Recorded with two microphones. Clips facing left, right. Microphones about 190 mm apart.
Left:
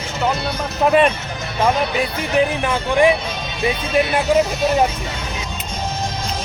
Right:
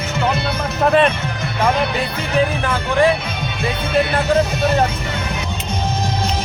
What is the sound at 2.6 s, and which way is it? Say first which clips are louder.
Speech: left 1 dB; 15° left (ahead or behind).